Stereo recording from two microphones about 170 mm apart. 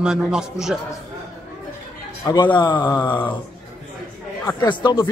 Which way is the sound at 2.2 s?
25° left (ahead or behind).